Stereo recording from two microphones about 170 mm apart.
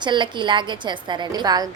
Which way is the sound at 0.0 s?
25° right (ahead or behind).